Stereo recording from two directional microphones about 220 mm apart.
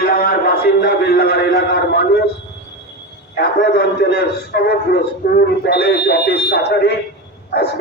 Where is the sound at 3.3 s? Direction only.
50° left (ahead or behind).